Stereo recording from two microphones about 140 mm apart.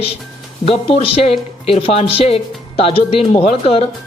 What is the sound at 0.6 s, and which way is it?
Speech, 45° left (ahead or behind).